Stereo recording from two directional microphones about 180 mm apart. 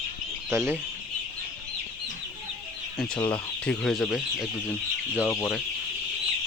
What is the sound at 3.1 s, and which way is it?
Speech, 25° left (ahead or behind).